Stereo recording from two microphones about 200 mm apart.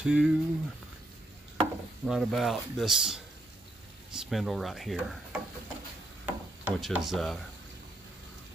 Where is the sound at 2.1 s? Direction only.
Centre (ahead or behind).